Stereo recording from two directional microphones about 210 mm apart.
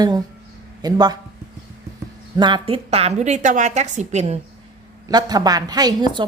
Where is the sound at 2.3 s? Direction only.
20° right (ahead or behind).